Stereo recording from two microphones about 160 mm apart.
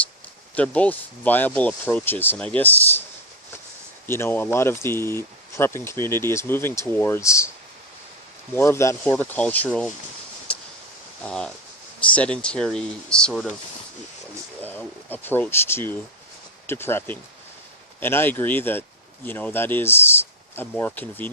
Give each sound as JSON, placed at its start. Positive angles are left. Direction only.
{"t": 0.5, "sound": "speech", "side_deg": 10}
{"t": 4.0, "sound": "speech", "side_deg": 15}
{"t": 8.5, "sound": "speech", "side_deg": 15}
{"t": 11.2, "sound": "speech", "side_deg": 5}
{"t": 14.6, "sound": "speech", "side_deg": 10}